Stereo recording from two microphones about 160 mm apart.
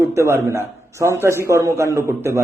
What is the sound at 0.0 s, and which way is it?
A man's voice, 20° right (ahead or behind).